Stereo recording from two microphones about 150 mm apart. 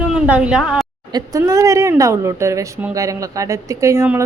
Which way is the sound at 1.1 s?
25° right (ahead or behind).